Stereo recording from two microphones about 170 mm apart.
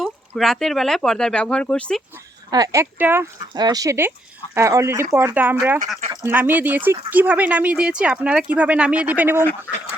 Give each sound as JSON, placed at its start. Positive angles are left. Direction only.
{"t": 0.0, "sound": "speech", "side_deg": 0}
{"t": 2.5, "sound": "speech", "side_deg": -20}
{"t": 3.5, "sound": "speech", "side_deg": -25}